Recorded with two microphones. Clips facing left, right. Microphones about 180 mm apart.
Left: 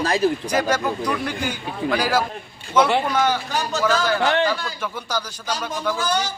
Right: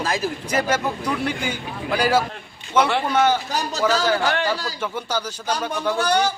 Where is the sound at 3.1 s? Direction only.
35° right (ahead or behind).